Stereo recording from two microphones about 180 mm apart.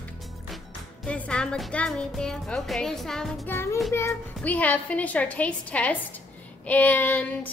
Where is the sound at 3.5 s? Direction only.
15° left (ahead or behind).